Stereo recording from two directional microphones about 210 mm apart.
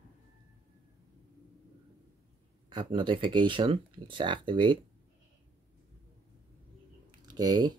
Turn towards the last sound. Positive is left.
turn(degrees=-20)  # may be behind; listen again after turning